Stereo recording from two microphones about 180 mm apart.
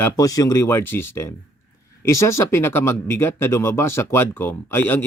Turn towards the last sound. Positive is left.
turn(degrees=10)  # may be behind; listen again after turning